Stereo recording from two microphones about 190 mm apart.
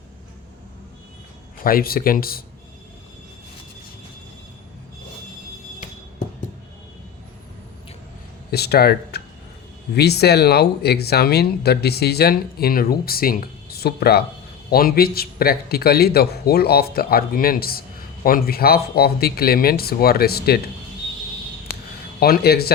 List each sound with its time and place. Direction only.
1.6 s a man's voice: 50° left (ahead or behind)
8.4 s a sound: 55° left (ahead or behind)
9.9 s a man's voice: 60° left (ahead or behind)
22.2 s speech: 55° left (ahead or behind)